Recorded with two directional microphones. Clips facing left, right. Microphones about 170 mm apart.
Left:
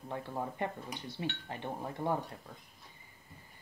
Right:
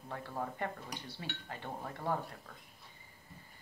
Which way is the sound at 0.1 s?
15° left (ahead or behind).